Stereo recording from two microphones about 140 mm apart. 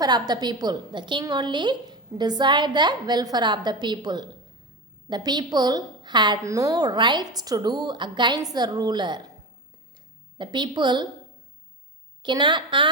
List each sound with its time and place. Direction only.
0.0 s a woman's voice: 30° right (ahead or behind)
10.3 s a woman's voice: 35° right (ahead or behind)
12.2 s a woman's voice: 35° right (ahead or behind)